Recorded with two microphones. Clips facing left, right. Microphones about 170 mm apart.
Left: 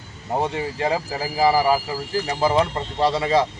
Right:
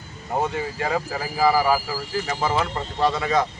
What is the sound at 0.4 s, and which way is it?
Speech, 30° left (ahead or behind).